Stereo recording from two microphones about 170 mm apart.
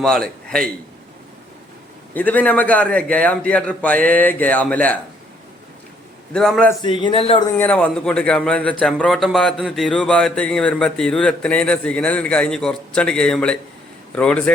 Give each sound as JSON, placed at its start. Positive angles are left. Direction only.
{"t": 0.0, "sound": "a man's voice", "side_deg": 5}
{"t": 2.1, "sound": "a man's voice", "side_deg": 10}
{"t": 6.3, "sound": "speech", "side_deg": 5}
{"t": 6.8, "sound": "a man's voice", "side_deg": 30}
{"t": 7.6, "sound": "a man's voice", "side_deg": 10}